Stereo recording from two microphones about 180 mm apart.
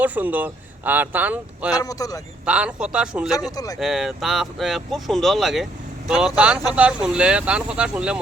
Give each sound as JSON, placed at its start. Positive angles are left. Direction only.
{"t": 0.0, "sound": "speech", "side_deg": -10}
{"t": 1.7, "sound": "speech", "side_deg": 20}
{"t": 2.5, "sound": "speech", "side_deg": -5}
{"t": 3.5, "sound": "speech", "side_deg": 20}
{"t": 3.8, "sound": "speech", "side_deg": 0}